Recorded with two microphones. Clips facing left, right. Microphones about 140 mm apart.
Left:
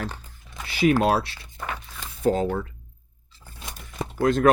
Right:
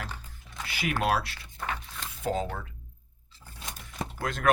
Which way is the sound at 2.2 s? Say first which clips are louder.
Left 8 dB; 40° left (ahead or behind).